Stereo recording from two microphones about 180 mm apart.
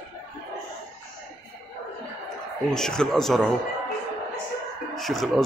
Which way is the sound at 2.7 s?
5° left (ahead or behind).